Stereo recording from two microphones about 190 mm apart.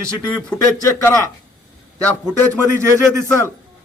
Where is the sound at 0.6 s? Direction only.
15° left (ahead or behind).